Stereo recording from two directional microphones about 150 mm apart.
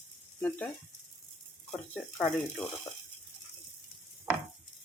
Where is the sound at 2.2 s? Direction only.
5° left (ahead or behind).